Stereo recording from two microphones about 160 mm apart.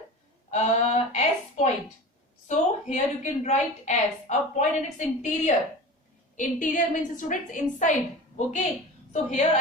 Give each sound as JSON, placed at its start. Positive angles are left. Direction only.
{"t": 0.5, "sound": "a woman's voice", "side_deg": 45}
{"t": 9.1, "sound": "a woman's voice", "side_deg": 45}